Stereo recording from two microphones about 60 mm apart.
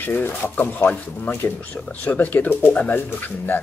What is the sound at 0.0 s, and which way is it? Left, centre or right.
Speech, left.